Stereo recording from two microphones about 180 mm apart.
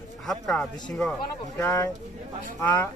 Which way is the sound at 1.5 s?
15° left (ahead or behind).